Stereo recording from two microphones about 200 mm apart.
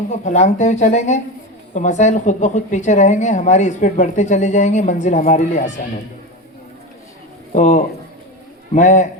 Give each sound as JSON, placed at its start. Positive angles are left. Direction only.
{"t": 0.1, "sound": "a woman's voice", "side_deg": 35}
{"t": 7.5, "sound": "a woman's voice", "side_deg": 35}